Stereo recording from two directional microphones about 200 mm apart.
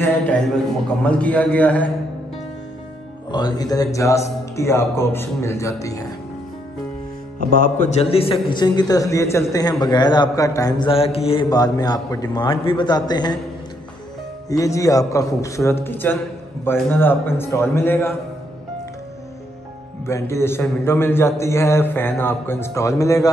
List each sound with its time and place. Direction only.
0.0 s a man's voice: 5° left (ahead or behind)
3.3 s a man's voice: 20° left (ahead or behind)
7.3 s a man's voice: 40° left (ahead or behind); by 13.4 s 20° left (ahead or behind)
14.5 s a man's voice: 15° left (ahead or behind)
20.1 s a man's voice: 15° left (ahead or behind)